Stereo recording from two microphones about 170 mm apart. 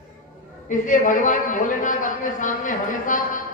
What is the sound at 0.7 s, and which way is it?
A man's voice, 50° left (ahead or behind).